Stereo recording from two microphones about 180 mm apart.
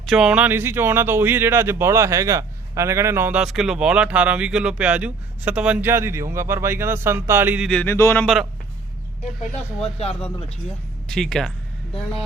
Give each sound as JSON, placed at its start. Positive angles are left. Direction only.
{"t": 0.0, "sound": "speech", "side_deg": 0}
{"t": 7.7, "sound": "speech", "side_deg": 10}
{"t": 9.4, "sound": "speech", "side_deg": 35}
{"t": 11.1, "sound": "speech", "side_deg": 5}